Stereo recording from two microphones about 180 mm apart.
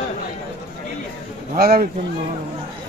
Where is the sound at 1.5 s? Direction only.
55° right (ahead or behind).